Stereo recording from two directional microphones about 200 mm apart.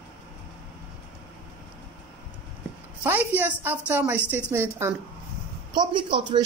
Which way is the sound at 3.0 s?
10° right (ahead or behind).